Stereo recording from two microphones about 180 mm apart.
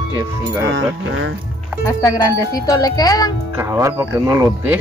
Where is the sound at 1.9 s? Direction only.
20° left (ahead or behind).